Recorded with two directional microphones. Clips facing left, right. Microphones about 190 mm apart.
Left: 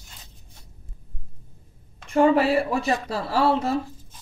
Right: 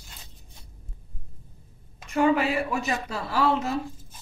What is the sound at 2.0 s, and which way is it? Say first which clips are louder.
A woman's voice: left 4 dB; 35° left (ahead or behind).